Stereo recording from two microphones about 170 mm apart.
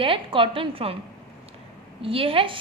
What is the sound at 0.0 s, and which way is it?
Speech, 30° right (ahead or behind).